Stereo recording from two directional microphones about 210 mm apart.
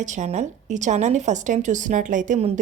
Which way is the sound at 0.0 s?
35° right (ahead or behind).